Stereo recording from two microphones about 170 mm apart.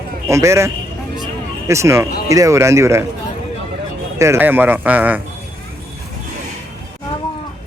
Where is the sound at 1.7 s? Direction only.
15° right (ahead or behind).